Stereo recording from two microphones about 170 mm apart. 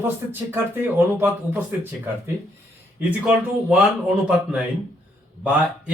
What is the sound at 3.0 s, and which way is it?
Speech, 10° right (ahead or behind).